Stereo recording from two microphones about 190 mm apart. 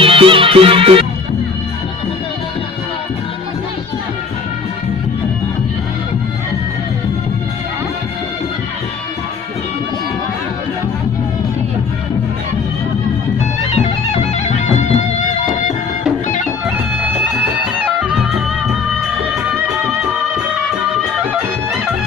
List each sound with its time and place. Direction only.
0.0 s music: 30° right (ahead or behind)
13.6 s music: 35° left (ahead or behind)
17.6 s music: 10° right (ahead or behind)